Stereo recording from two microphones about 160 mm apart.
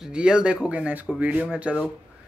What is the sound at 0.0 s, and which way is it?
A man's voice, 5° right (ahead or behind).